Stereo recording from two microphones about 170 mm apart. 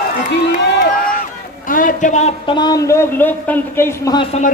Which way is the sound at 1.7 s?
50° left (ahead or behind).